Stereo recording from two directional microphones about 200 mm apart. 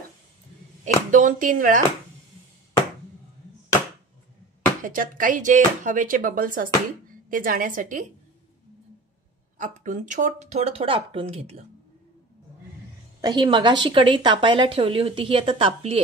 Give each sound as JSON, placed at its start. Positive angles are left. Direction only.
{"t": 0.8, "sound": "speech", "side_deg": -40}
{"t": 4.8, "sound": "speech", "side_deg": -45}
{"t": 9.6, "sound": "speech", "side_deg": -40}
{"t": 13.2, "sound": "a woman's voice", "side_deg": -20}